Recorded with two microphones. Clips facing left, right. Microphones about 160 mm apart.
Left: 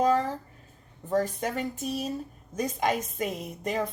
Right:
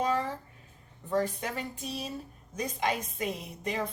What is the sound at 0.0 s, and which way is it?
Speech, 40° left (ahead or behind).